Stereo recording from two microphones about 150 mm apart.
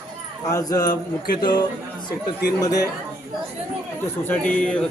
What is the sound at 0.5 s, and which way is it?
Speech, 25° left (ahead or behind).